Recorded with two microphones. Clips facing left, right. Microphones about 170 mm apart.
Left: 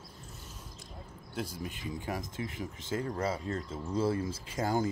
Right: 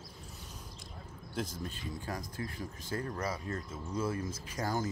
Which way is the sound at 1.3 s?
10° left (ahead or behind).